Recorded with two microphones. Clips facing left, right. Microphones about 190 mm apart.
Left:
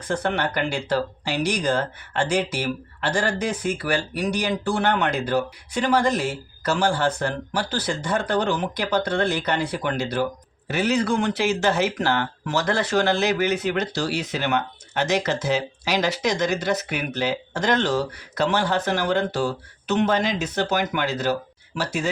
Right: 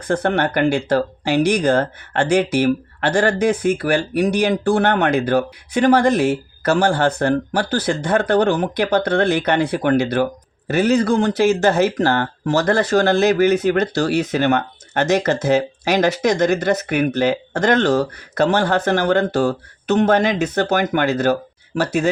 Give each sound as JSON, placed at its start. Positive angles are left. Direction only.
{"t": 0.1, "sound": "speech", "side_deg": -50}
{"t": 10.7, "sound": "speech", "side_deg": -45}